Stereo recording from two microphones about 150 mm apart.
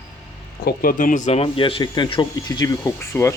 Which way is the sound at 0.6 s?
70° left (ahead or behind).